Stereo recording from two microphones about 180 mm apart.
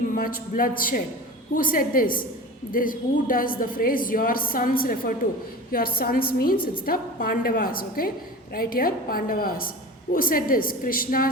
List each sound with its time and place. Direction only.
0.1 s a man's voice: 50° left (ahead or behind)